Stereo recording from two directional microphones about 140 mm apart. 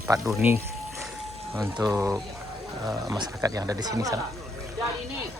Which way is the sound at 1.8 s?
25° right (ahead or behind).